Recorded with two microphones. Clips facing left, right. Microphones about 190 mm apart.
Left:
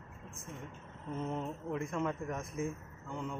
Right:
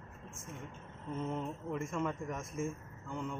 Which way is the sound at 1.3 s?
Centre (ahead or behind).